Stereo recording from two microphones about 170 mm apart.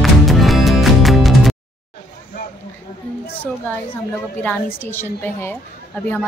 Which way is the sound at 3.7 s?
10° left (ahead or behind).